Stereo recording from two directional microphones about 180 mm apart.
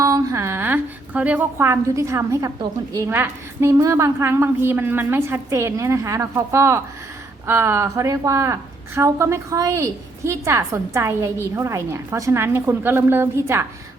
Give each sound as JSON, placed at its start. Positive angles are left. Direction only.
{"t": 0.0, "sound": "a woman's voice", "side_deg": -20}